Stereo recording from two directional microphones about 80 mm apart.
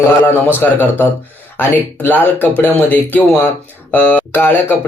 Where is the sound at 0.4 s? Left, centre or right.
Left.